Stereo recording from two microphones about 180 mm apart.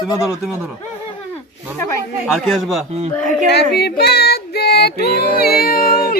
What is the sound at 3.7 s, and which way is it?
Female singing, 65° left (ahead or behind).